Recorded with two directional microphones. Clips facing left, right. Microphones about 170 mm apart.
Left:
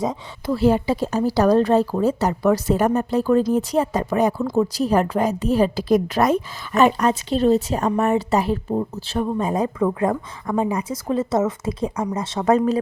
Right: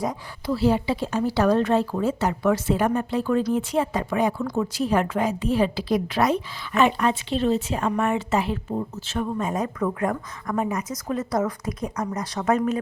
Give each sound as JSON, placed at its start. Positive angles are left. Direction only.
{"t": 0.4, "sound": "a woman's voice", "side_deg": 50}